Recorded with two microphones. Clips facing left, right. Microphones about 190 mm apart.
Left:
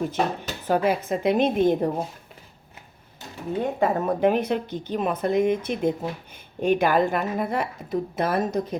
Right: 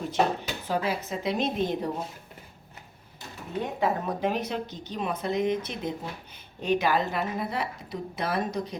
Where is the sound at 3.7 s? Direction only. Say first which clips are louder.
Left 3 dB; 50° left (ahead or behind).